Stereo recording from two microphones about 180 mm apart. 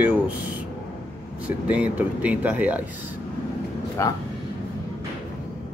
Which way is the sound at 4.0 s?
15° left (ahead or behind).